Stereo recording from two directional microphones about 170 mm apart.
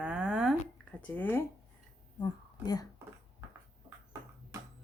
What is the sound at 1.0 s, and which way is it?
Speech, 10° left (ahead or behind).